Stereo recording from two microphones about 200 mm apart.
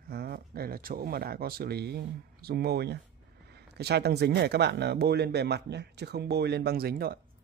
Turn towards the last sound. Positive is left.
turn(degrees=-50)  # may be behind; listen again after turning